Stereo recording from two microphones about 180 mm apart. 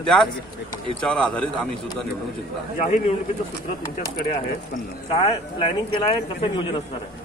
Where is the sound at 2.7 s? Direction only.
45° left (ahead or behind).